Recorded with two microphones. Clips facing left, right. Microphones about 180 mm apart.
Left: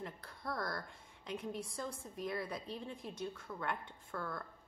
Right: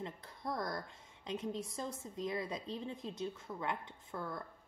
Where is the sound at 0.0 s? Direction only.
20° right (ahead or behind).